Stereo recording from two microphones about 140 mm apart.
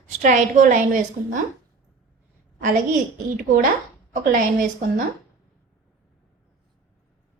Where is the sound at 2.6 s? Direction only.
70° right (ahead or behind).